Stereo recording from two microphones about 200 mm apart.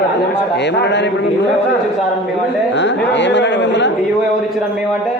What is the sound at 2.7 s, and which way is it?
Speech, 60° left (ahead or behind).